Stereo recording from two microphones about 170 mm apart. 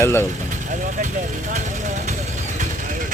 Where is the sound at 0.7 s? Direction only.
50° right (ahead or behind).